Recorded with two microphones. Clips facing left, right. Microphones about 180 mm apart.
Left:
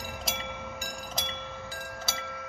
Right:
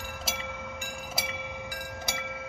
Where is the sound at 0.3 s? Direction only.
Centre (ahead or behind).